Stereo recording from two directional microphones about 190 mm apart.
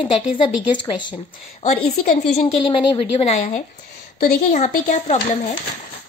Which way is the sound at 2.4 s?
25° left (ahead or behind).